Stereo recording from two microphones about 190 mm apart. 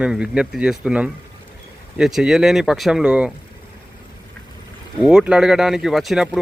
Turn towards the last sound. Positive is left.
turn(degrees=0)  # may be behind; listen again after turning